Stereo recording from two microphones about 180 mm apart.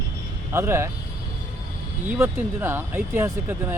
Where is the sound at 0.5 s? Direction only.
15° right (ahead or behind).